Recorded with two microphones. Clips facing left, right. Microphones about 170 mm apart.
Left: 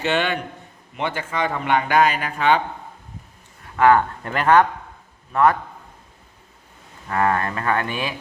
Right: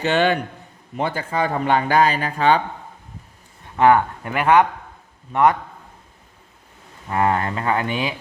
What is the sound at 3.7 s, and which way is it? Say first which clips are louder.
Speech: right 1 dB; 25° right (ahead or behind).